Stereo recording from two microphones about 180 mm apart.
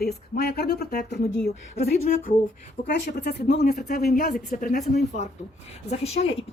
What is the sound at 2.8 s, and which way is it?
Speech, 60° left (ahead or behind).